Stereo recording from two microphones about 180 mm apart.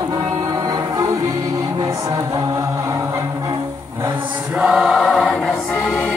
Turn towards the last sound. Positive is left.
turn(degrees=0)  # may be behind; listen again after turning